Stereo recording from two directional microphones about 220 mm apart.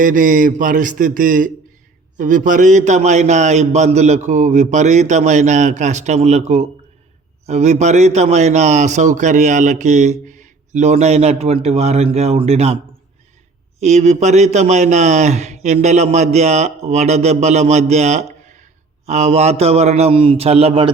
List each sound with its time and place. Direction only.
0.0 s a man's voice: 35° right (ahead or behind)
13.7 s a man's voice: 30° right (ahead or behind)